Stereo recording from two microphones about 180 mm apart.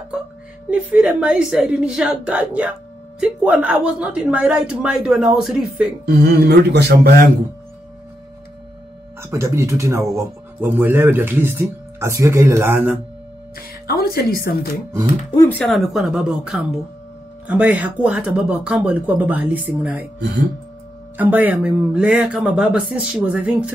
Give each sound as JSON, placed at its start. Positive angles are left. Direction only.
{"t": 0.7, "sound": "a man's voice", "side_deg": -10}
{"t": 6.0, "sound": "speech", "side_deg": -60}
{"t": 9.2, "sound": "speech", "side_deg": -15}
{"t": 13.6, "sound": "a woman's voice", "side_deg": 55}
{"t": 15.3, "sound": "a man's voice", "side_deg": 10}
{"t": 21.2, "sound": "speech", "side_deg": -10}